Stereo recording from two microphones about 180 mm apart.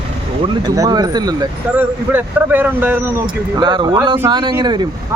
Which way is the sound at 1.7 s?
10° right (ahead or behind).